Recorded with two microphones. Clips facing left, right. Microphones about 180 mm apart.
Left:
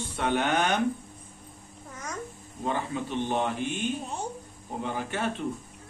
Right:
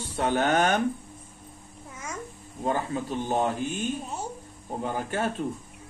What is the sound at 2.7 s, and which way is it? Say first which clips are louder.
Speech: right 2 dB; 40° right (ahead or behind).